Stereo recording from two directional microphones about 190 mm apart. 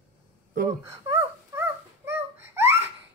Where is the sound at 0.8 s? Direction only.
15° right (ahead or behind).